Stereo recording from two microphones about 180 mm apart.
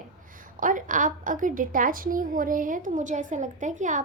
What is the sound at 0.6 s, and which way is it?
A woman's voice, 45° right (ahead or behind).